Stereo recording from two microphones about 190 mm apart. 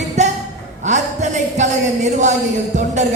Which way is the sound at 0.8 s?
40° right (ahead or behind).